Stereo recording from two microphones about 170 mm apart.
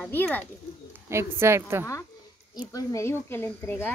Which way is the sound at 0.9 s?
15° right (ahead or behind).